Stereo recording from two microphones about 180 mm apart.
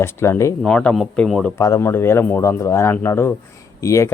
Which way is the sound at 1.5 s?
15° left (ahead or behind).